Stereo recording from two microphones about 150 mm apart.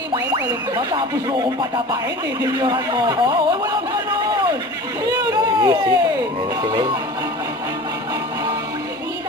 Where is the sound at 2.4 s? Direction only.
25° right (ahead or behind).